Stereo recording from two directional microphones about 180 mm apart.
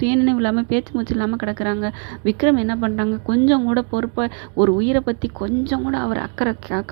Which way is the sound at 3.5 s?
30° right (ahead or behind).